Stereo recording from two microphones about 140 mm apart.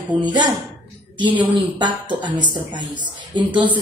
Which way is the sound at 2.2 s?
35° right (ahead or behind).